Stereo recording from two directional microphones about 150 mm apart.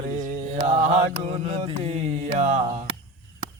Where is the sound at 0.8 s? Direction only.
50° right (ahead or behind).